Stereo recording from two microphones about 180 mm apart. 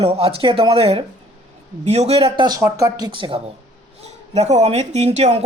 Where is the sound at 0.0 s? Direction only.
30° right (ahead or behind).